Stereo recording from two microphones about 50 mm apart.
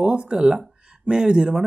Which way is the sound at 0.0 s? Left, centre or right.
Centre.